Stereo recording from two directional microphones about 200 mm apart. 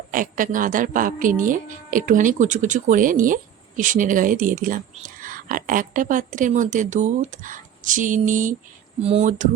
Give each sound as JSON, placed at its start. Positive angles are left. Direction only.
{"t": 0.1, "sound": "speech", "side_deg": -40}